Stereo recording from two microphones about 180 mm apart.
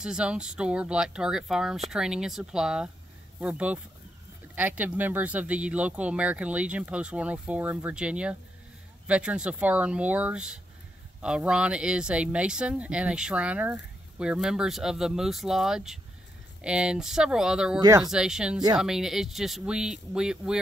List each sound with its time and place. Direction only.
0.0 s speech: 5° right (ahead or behind)
17.7 s speech: 20° right (ahead or behind)
18.1 s speech: 5° right (ahead or behind)